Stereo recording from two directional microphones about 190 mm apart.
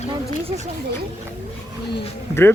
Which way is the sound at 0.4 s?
35° right (ahead or behind).